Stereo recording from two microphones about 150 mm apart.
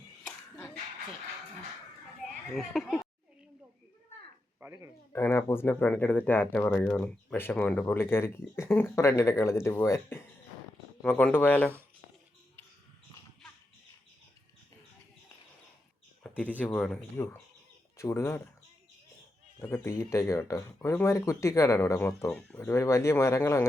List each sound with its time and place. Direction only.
0.3 s a sound: 15° left (ahead or behind)
2.6 s speech: centre (ahead or behind)
4.6 s speech: 20° right (ahead or behind)
5.1 s speech: 15° left (ahead or behind)
16.2 s speech: 10° left (ahead or behind)
17.9 s speech: 20° left (ahead or behind)
19.7 s speech: 20° left (ahead or behind)